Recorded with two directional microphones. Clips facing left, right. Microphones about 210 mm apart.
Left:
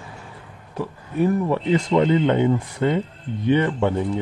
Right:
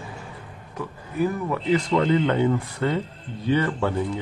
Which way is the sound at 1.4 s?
25° left (ahead or behind).